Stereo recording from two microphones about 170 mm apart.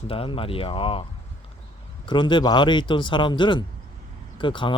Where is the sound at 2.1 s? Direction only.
30° left (ahead or behind).